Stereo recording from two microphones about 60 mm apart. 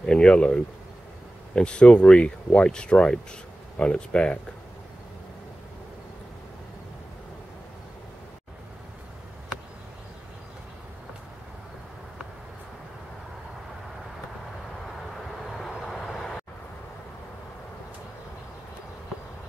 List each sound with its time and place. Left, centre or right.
0.0 s speech: centre
15.5 s vehicle: centre